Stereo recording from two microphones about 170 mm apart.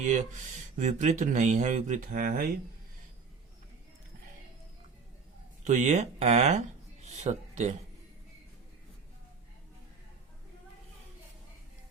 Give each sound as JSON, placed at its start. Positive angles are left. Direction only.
{"t": 0.0, "sound": "speech", "side_deg": -45}
{"t": 5.6, "sound": "speech", "side_deg": -45}
{"t": 7.0, "sound": "a sound", "side_deg": -40}